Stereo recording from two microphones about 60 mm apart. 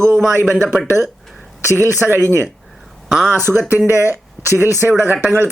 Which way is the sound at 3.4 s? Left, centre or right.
Right.